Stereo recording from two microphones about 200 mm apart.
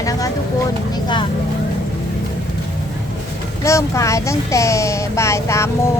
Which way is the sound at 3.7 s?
15° left (ahead or behind).